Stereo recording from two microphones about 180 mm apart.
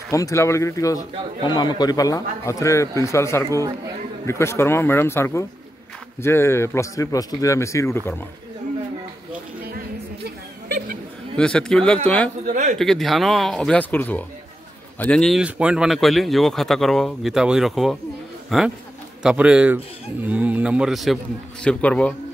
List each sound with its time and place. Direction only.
0.1 s a man's voice: 15° left (ahead or behind)
10.2 s a sound: 60° right (ahead or behind)
11.3 s speech: 5° left (ahead or behind)
12.4 s speech: 45° right (ahead or behind)
12.7 s a man's voice: centre (ahead or behind)